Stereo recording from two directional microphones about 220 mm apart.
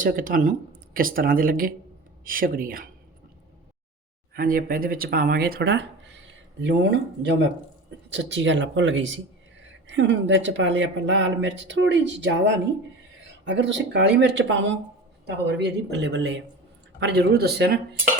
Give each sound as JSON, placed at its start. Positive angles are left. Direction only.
{"t": 0.0, "sound": "speech", "side_deg": -40}
{"t": 4.4, "sound": "speech", "side_deg": -40}
{"t": 8.1, "sound": "speech", "side_deg": -55}